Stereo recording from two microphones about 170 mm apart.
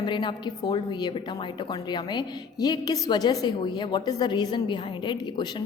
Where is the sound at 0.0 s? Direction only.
30° left (ahead or behind).